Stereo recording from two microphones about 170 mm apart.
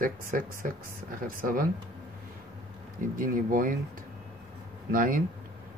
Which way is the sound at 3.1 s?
55° right (ahead or behind).